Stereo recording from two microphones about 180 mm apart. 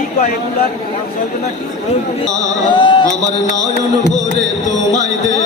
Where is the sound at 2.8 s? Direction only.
25° left (ahead or behind).